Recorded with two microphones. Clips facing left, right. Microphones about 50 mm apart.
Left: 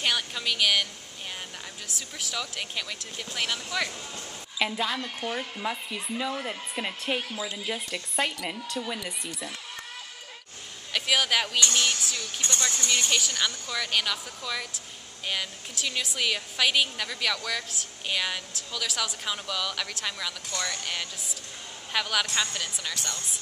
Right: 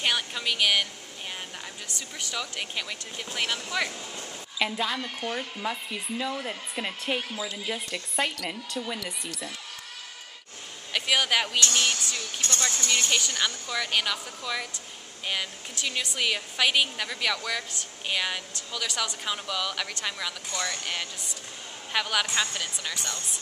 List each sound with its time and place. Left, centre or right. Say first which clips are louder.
0.0 s a woman's voice: right 1 dB; centre
2.0 s a woman's voice: even; centre
10.9 s a woman's voice: even; centre
12.4 s speech: even; centre
12.6 s a woman's voice: right 1 dB; centre